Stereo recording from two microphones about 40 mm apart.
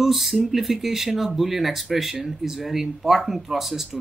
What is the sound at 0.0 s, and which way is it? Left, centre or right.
Speech, centre.